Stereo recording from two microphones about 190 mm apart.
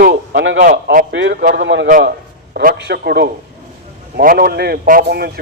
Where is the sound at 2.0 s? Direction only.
50° right (ahead or behind).